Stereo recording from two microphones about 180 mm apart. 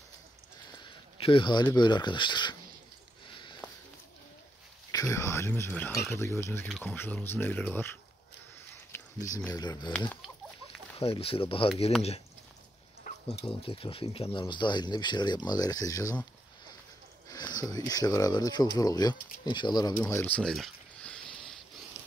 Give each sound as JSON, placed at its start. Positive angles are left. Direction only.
{"t": 0.8, "sound": "speech", "side_deg": 30}
{"t": 3.3, "sound": "a sound", "side_deg": 25}
{"t": 4.9, "sound": "speech", "side_deg": 15}
{"t": 8.9, "sound": "a sound", "side_deg": 15}
{"t": 9.3, "sound": "speech", "side_deg": 20}
{"t": 11.0, "sound": "speech", "side_deg": 30}
{"t": 13.0, "sound": "speech", "side_deg": 35}
{"t": 17.3, "sound": "speech", "side_deg": 20}
{"t": 20.0, "sound": "a sound", "side_deg": 10}